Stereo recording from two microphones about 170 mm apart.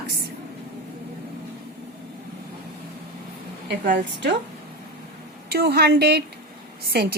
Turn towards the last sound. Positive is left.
turn(degrees=-65)  # may be behind; listen again after turning